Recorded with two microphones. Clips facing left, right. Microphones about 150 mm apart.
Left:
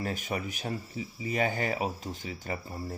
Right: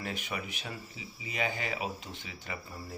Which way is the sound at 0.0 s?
40° left (ahead or behind).